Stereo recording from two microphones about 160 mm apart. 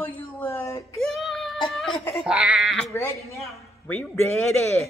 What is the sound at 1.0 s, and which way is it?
Child singing, centre (ahead or behind).